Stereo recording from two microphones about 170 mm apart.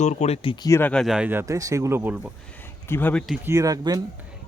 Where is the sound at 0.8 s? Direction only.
5° left (ahead or behind); by 2.3 s 10° right (ahead or behind).